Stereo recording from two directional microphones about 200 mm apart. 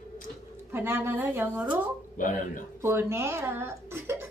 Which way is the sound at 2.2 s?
40° left (ahead or behind).